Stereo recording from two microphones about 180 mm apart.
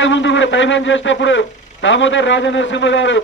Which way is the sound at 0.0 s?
90° left.